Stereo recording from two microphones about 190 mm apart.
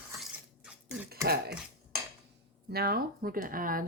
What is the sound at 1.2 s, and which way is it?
Speech, 55° right (ahead or behind).